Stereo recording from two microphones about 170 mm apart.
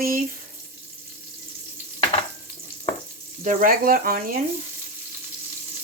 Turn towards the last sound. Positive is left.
turn(degrees=-55)  # may be behind; listen again after turning